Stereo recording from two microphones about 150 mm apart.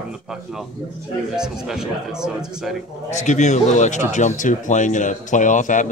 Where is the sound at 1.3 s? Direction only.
5° right (ahead or behind).